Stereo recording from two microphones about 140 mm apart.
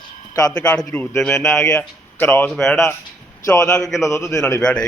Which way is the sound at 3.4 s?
25° left (ahead or behind).